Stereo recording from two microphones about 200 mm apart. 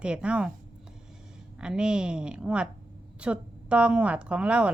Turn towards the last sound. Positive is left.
turn(degrees=-5)  # may be behind; listen again after turning